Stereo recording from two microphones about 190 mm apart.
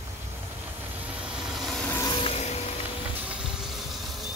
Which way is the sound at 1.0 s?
Centre (ahead or behind).